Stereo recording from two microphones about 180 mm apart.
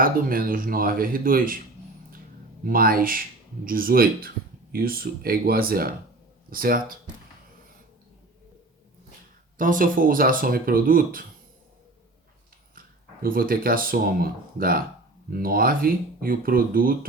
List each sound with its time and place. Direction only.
0.0 s speech: 50° right (ahead or behind)
2.6 s speech: 55° right (ahead or behind)
9.6 s speech: 50° right (ahead or behind)
13.2 s speech: 55° right (ahead or behind)